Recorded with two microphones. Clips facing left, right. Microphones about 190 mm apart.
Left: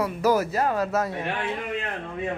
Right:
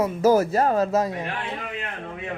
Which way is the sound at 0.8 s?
20° right (ahead or behind).